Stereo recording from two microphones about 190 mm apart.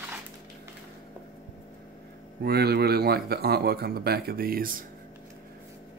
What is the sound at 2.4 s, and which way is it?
Speech, 55° right (ahead or behind).